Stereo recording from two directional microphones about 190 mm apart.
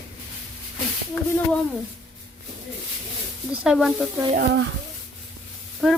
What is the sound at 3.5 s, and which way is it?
Speech, 5° right (ahead or behind).